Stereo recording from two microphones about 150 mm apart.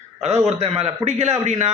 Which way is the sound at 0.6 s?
45° right (ahead or behind).